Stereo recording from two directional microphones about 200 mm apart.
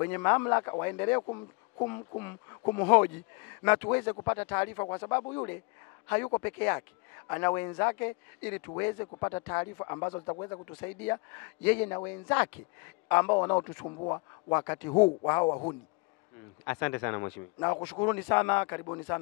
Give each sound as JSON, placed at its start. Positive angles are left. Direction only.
{"t": 0.0, "sound": "speech", "side_deg": 10}
{"t": 1.2, "sound": "speech", "side_deg": 25}
{"t": 1.9, "sound": "speech", "side_deg": 15}
{"t": 6.0, "sound": "a man's voice", "side_deg": 10}
{"t": 14.9, "sound": "speech", "side_deg": 25}
{"t": 16.6, "sound": "speech", "side_deg": 10}